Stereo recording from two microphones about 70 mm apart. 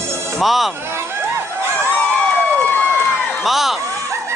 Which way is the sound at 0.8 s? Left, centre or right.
Right.